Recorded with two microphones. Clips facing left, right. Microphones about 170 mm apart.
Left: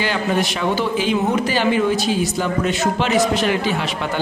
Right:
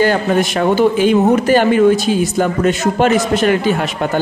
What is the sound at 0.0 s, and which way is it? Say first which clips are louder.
Speech: right 6 dB; 45° right (ahead or behind).